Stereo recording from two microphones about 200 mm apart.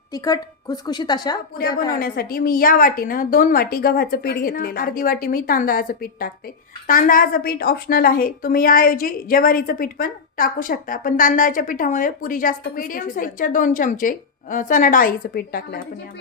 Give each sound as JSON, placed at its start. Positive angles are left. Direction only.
{"t": 0.1, "sound": "a woman's voice", "side_deg": 20}
{"t": 1.9, "sound": "a woman's voice", "side_deg": 45}